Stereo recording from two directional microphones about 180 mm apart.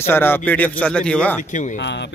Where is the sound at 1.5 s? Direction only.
45° left (ahead or behind).